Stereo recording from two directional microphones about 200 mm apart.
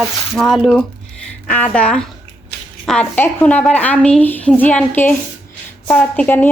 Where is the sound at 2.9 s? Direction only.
10° left (ahead or behind).